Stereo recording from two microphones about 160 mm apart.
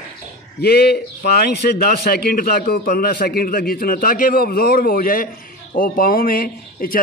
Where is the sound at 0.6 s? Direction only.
80° left.